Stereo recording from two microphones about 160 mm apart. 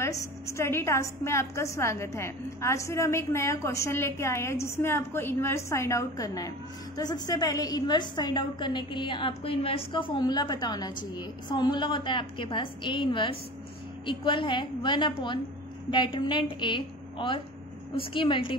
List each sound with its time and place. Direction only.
0.0 s a woman's voice: 20° left (ahead or behind)